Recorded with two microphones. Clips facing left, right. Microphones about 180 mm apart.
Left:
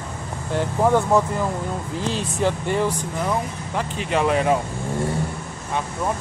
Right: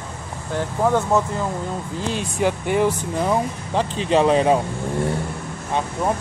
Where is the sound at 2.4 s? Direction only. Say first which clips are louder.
Right 2 dB; 10° right (ahead or behind).